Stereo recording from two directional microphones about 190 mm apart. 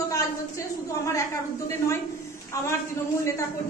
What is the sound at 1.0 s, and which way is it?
Speech, 15° left (ahead or behind).